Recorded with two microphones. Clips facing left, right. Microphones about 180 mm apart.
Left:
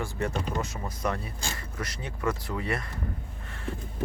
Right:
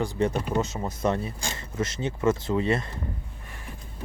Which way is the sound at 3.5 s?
15° right (ahead or behind).